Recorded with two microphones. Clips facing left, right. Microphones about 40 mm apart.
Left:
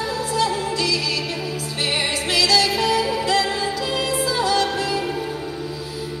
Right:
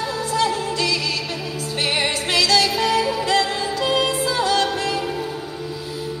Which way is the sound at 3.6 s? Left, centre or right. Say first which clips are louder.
Right 3 dB; right.